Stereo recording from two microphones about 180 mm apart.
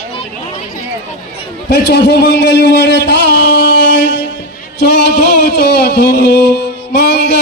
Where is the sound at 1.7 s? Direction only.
75° left (ahead or behind).